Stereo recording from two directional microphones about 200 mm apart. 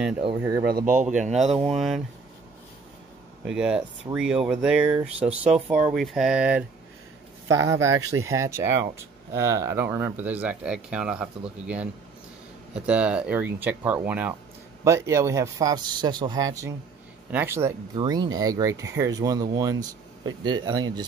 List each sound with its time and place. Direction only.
0.7 s speech: 45° right (ahead or behind); by 1.8 s 30° right (ahead or behind)
1.8 s speech: centre (ahead or behind)
3.4 s speech: 5° right (ahead or behind); by 21.0 s 20° right (ahead or behind)